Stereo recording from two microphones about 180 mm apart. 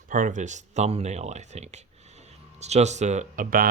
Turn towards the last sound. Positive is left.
turn(degrees=-50)  # may be behind; listen again after turning